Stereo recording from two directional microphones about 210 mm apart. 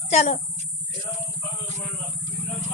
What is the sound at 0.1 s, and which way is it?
Speech, 35° left (ahead or behind).